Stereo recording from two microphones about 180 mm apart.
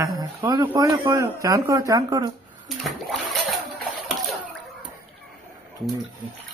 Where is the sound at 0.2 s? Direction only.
20° right (ahead or behind).